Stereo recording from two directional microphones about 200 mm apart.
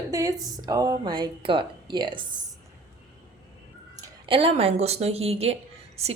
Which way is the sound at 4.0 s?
25° right (ahead or behind).